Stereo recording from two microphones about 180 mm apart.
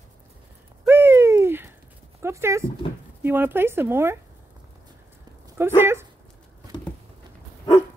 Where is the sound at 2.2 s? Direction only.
15° right (ahead or behind).